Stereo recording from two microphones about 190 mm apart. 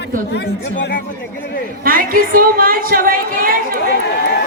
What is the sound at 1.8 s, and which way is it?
A woman's voice, 50° right (ahead or behind).